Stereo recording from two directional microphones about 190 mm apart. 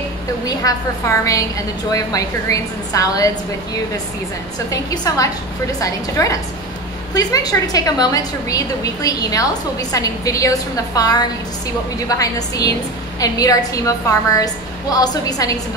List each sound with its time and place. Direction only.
0.5 s a woman's voice: 20° left (ahead or behind)
4.6 s a woman's voice: 20° left (ahead or behind)